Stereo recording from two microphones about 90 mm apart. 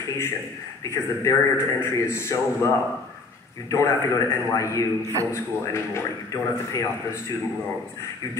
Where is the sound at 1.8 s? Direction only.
30° left (ahead or behind).